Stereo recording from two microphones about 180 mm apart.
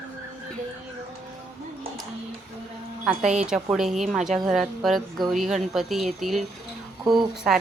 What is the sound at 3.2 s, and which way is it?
Speech, 40° right (ahead or behind).